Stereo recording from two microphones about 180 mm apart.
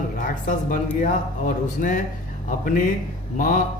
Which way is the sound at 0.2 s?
45° left (ahead or behind).